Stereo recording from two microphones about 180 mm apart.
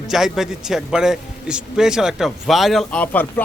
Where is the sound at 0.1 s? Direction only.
Centre (ahead or behind).